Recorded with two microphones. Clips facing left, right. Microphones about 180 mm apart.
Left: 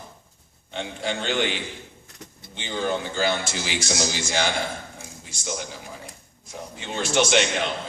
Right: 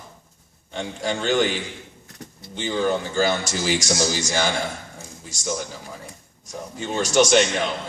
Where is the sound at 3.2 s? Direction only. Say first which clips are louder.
Right 3 dB; 45° right (ahead or behind).